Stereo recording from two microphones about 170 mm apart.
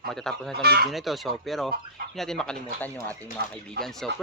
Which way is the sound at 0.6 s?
70° right (ahead or behind).